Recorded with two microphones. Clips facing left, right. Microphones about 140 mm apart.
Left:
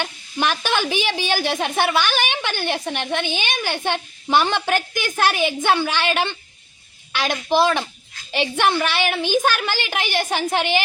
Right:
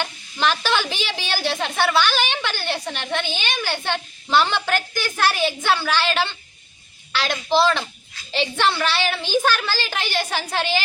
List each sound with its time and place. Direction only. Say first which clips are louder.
0.0 s a woman's voice: even; 15° left (ahead or behind)